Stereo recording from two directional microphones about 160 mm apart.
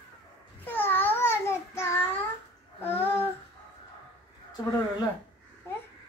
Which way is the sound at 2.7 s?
15° left (ahead or behind).